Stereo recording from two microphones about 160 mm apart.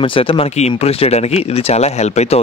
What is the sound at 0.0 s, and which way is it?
Speech, 35° left (ahead or behind).